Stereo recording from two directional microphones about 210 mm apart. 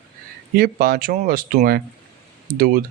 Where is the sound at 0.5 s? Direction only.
45° right (ahead or behind).